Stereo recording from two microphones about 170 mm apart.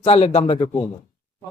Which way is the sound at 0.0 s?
35° left (ahead or behind).